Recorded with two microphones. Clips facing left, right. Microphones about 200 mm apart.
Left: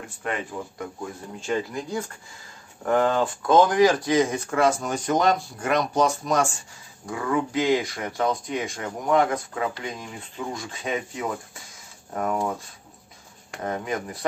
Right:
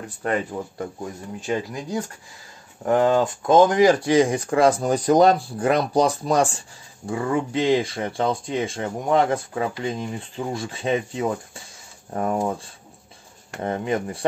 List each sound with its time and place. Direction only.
0.2 s speech: 35° right (ahead or behind)
1.4 s speech: 15° right (ahead or behind)
3.4 s speech: 20° right (ahead or behind)